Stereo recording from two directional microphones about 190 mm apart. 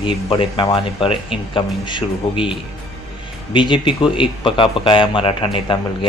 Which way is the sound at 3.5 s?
25° left (ahead or behind).